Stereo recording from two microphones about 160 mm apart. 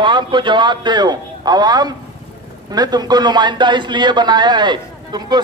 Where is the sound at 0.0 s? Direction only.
30° right (ahead or behind).